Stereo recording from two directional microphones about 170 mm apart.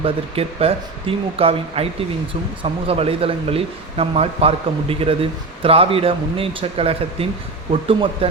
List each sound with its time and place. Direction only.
0.0 s speech: 35° right (ahead or behind)